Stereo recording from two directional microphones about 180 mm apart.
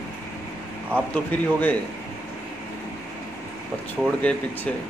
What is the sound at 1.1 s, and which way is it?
Speech, 10° left (ahead or behind).